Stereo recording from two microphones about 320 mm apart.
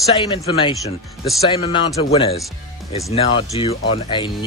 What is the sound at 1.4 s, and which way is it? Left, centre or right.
A woman's voice, centre.